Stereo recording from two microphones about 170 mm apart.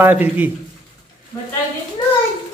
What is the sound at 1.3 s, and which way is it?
Speech, 20° left (ahead or behind).